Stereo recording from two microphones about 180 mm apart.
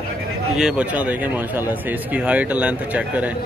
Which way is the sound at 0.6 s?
5° right (ahead or behind).